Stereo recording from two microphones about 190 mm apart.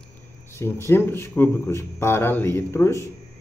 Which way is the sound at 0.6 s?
15° left (ahead or behind).